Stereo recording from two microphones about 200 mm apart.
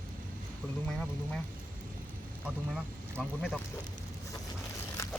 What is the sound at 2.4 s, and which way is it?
Speech, 5° right (ahead or behind).